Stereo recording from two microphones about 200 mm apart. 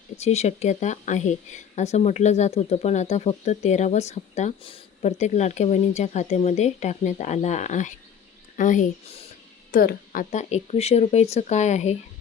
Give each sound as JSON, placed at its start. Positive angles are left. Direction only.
{"t": 0.2, "sound": "a woman's voice", "side_deg": 30}